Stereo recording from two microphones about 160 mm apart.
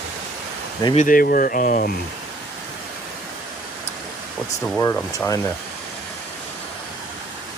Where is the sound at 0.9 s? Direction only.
55° left (ahead or behind).